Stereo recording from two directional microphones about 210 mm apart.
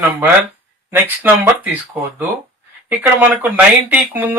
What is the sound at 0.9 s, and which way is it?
Speech, 10° right (ahead or behind).